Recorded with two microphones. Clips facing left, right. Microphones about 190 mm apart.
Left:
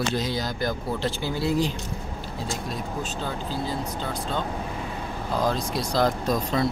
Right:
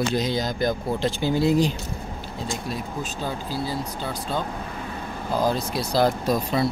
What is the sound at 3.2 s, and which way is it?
Speech, 10° right (ahead or behind).